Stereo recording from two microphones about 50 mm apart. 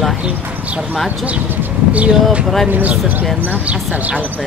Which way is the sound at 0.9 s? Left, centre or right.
Centre.